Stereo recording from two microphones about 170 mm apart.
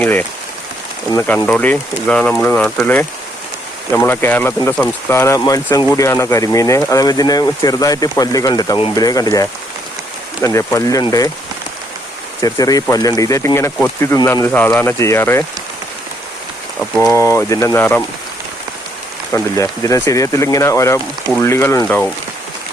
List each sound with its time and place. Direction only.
0.0 s speech: 10° left (ahead or behind)
1.5 s speech: 10° left (ahead or behind)
12.4 s speech: 20° left (ahead or behind)
17.0 s speech: 20° left (ahead or behind)
19.3 s speech: 20° left (ahead or behind)